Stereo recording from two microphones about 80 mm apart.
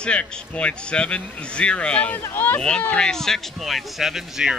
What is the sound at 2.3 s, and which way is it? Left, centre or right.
Speech, left.